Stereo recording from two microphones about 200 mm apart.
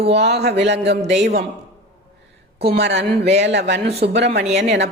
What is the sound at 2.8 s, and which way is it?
A woman's voice, 60° right (ahead or behind).